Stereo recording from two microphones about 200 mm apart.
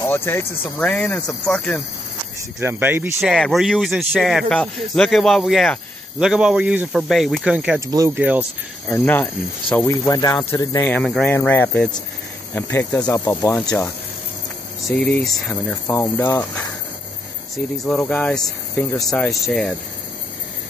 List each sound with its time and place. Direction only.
0.0 s speech: 10° left (ahead or behind)
2.6 s speech: 10° right (ahead or behind)
3.3 s speech: centre (ahead or behind)
7.9 s speech: 15° right (ahead or behind)
8.2 s speech: 5° right (ahead or behind)
8.8 s speech: 10° left (ahead or behind)
14.9 s speech: 5° left (ahead or behind)
17.8 s speech: 5° left (ahead or behind)